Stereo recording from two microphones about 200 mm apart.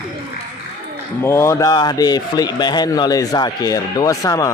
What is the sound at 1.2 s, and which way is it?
A man's voice, 15° left (ahead or behind).